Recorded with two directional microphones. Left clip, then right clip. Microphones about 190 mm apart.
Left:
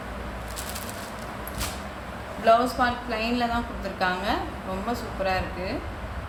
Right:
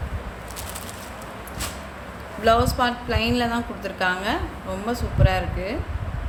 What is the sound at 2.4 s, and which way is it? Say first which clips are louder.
A woman's voice: right 1 dB; 55° right (ahead or behind).